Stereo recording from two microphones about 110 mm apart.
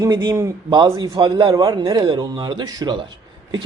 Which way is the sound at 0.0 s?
40° right (ahead or behind).